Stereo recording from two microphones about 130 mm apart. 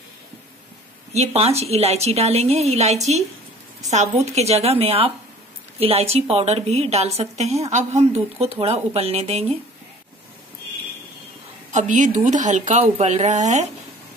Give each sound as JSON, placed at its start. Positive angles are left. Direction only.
{"t": 1.1, "sound": "a woman's voice", "side_deg": -55}
{"t": 11.7, "sound": "a woman's voice", "side_deg": -70}
{"t": 12.9, "sound": "speech", "side_deg": -60}